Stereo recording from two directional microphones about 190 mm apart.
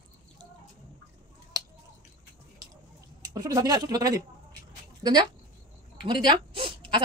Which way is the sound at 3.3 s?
20° right (ahead or behind).